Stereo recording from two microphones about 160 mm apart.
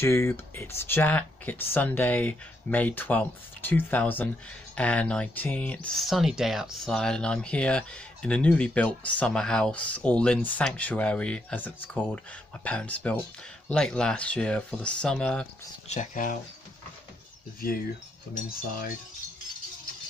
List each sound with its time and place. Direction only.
0.0 s speech: 15° left (ahead or behind)
15.9 s speech: 50° left (ahead or behind)
18.3 s cutlery: 65° left (ahead or behind)